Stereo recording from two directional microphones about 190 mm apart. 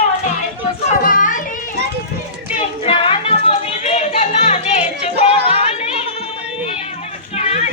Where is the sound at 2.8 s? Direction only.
30° left (ahead or behind).